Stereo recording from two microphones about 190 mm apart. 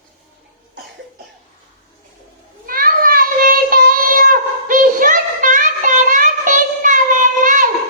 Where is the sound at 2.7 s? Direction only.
50° right (ahead or behind).